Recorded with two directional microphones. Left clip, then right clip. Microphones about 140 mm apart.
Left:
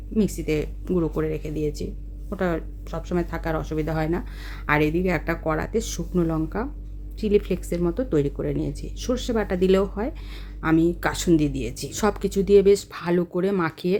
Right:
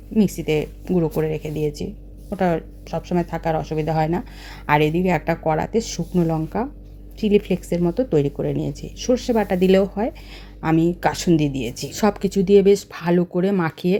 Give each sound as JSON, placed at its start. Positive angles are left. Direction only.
{"t": 0.2, "sound": "speech", "side_deg": -15}